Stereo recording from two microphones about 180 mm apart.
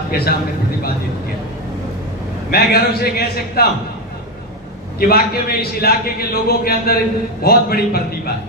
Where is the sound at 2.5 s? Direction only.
60° left (ahead or behind).